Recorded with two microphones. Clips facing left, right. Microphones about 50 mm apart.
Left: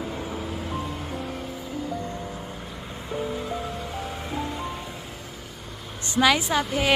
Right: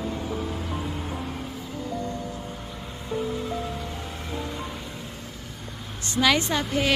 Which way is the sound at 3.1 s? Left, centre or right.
Centre.